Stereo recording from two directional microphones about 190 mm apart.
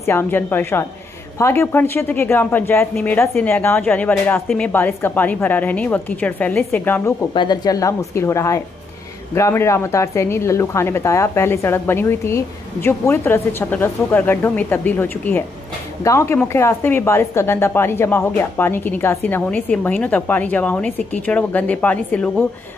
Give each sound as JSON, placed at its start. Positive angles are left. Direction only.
{"t": 0.0, "sound": "speech", "side_deg": 15}
{"t": 7.3, "sound": "speech", "side_deg": 20}